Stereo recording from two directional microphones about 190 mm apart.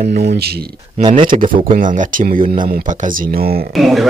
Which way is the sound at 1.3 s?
45° right (ahead or behind).